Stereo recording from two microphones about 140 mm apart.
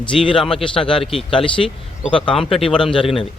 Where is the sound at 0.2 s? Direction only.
35° left (ahead or behind).